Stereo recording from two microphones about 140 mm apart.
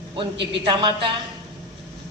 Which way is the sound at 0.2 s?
35° right (ahead or behind).